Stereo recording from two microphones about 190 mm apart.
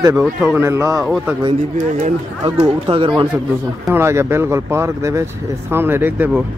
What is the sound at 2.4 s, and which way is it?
Speech, 30° right (ahead or behind).